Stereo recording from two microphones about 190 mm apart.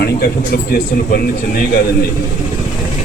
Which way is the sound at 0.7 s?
50° left (ahead or behind).